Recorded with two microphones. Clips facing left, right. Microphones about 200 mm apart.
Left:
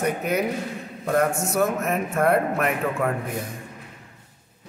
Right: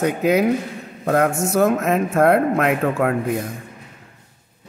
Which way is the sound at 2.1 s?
75° right (ahead or behind).